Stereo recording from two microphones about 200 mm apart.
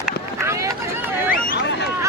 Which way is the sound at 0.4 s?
15° right (ahead or behind).